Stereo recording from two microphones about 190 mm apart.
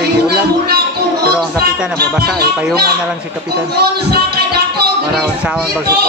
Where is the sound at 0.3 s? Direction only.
55° right (ahead or behind).